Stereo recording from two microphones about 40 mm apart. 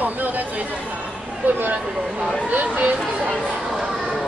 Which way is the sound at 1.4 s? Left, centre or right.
Right.